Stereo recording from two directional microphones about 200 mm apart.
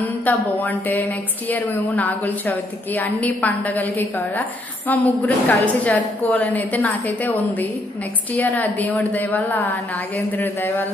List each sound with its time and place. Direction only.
0.0 s mantra: 10° left (ahead or behind)
1.5 s a woman's voice: 10° left (ahead or behind)